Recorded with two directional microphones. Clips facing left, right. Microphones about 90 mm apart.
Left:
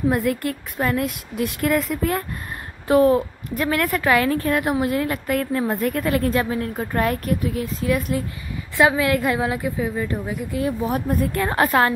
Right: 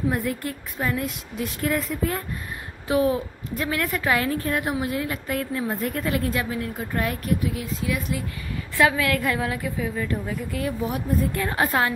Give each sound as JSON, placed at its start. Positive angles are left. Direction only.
{"t": 0.1, "sound": "a woman's voice", "side_deg": 70}
{"t": 2.9, "sound": "a woman's voice", "side_deg": 50}
{"t": 8.7, "sound": "a woman's voice", "side_deg": 25}
{"t": 11.1, "sound": "a woman's voice", "side_deg": 60}
{"t": 11.5, "sound": "a woman's voice", "side_deg": 70}